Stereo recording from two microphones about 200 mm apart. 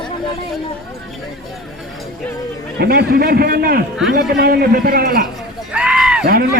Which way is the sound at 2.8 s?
50° right (ahead or behind).